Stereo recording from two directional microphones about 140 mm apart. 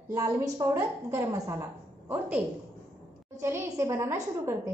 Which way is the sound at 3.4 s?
20° right (ahead or behind).